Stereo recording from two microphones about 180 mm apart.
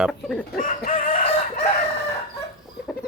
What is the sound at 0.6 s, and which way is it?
Chicken, 50° left (ahead or behind).